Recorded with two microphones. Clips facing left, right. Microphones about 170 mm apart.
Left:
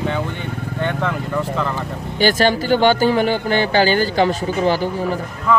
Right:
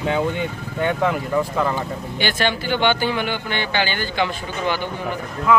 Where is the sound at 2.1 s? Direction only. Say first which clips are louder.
Left 7 dB; 40° left (ahead or behind).